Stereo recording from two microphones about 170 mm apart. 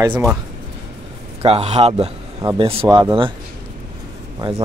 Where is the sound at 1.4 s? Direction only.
35° right (ahead or behind).